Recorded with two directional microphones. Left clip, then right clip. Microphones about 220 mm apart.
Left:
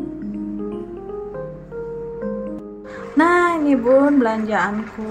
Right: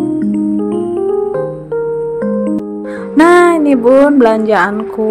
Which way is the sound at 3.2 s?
30° right (ahead or behind).